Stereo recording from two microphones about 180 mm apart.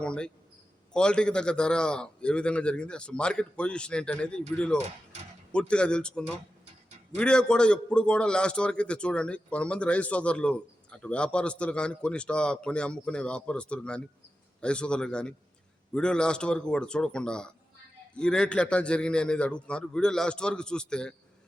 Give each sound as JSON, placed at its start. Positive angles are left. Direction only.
{"t": 0.0, "sound": "a man's voice", "side_deg": 5}